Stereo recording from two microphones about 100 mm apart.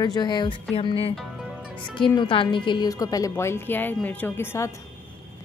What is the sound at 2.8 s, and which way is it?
Speech, 35° left (ahead or behind).